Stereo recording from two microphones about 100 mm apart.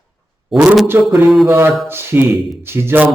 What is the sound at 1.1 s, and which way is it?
Speech, centre (ahead or behind).